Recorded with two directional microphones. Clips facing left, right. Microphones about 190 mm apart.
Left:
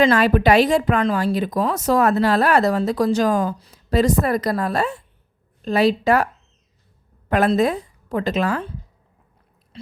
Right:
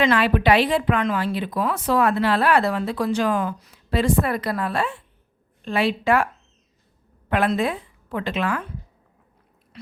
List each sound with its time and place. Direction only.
0.0 s a woman's voice: 40° left (ahead or behind)
7.3 s a woman's voice: 40° left (ahead or behind)